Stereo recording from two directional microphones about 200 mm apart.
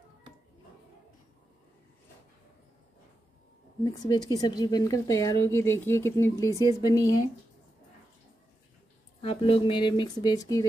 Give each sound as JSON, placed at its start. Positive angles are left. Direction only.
{"t": 3.8, "sound": "speech", "side_deg": 20}
{"t": 9.2, "sound": "speech", "side_deg": 25}